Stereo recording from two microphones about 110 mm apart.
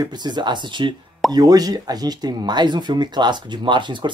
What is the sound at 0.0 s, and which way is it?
Speech, 40° right (ahead or behind).